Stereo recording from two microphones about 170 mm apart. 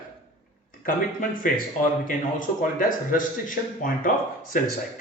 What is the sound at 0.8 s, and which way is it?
Speech, 55° left (ahead or behind).